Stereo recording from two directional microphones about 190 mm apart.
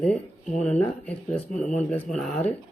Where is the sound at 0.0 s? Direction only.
5° left (ahead or behind).